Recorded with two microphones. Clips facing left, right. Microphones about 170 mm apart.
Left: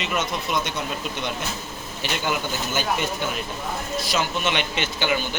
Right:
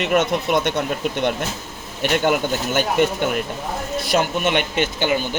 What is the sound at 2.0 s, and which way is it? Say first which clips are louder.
Speech: right 8 dB; 55° right (ahead or behind).